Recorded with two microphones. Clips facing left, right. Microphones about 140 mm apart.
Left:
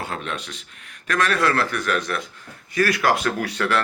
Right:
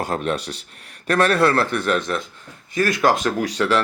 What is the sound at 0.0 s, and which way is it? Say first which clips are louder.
Speech: right 6 dB; 40° right (ahead or behind).